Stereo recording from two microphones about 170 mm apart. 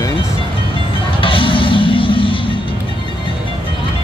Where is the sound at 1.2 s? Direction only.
30° left (ahead or behind).